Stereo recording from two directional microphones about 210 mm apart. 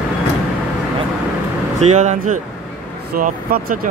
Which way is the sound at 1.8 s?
35° right (ahead or behind).